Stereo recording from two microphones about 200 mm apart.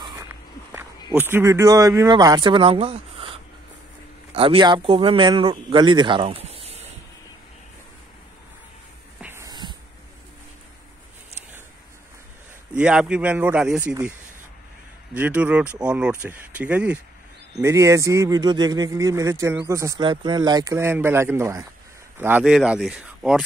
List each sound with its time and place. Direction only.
0.0 s walk: 15° right (ahead or behind)
1.1 s a man's voice: 10° right (ahead or behind); by 6.9 s 30° right (ahead or behind)
9.2 s spray: 15° right (ahead or behind)
12.7 s speech: 5° right (ahead or behind)
15.1 s speech: 10° right (ahead or behind)